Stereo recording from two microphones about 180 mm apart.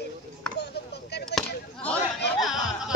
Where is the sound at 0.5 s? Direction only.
65° left (ahead or behind).